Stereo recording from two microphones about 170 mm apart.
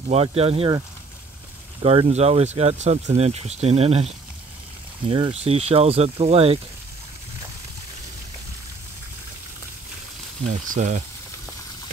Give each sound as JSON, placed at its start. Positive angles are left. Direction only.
{"t": 0.1, "sound": "speech", "side_deg": -35}
{"t": 10.4, "sound": "speech", "side_deg": -45}